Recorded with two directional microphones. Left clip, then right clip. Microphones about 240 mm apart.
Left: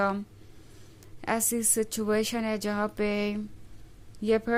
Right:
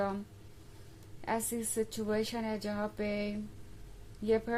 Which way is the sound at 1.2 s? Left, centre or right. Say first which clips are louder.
Left 6 dB; left.